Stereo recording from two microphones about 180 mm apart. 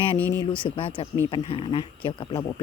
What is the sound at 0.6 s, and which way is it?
Speech, 30° left (ahead or behind).